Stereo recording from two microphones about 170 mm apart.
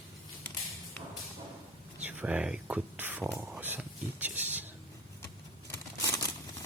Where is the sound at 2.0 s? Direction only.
10° right (ahead or behind).